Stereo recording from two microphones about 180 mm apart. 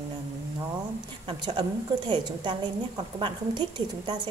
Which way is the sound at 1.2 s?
25° right (ahead or behind).